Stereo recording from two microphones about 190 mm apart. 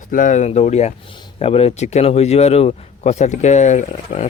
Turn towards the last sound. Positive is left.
turn(degrees=40)  # may be behind; listen again after turning